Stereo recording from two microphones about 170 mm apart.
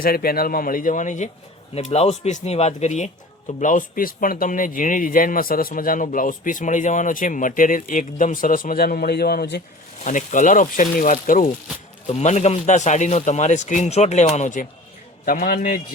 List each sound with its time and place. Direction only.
0.0 s speech: 60° left (ahead or behind)
1.7 s speech: 35° left (ahead or behind); by 9.6 s 70° left (ahead or behind)
10.0 s speech: 50° left (ahead or behind)